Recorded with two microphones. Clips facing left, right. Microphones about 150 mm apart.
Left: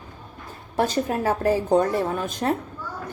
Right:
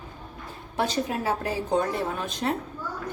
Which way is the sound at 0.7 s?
45° left (ahead or behind).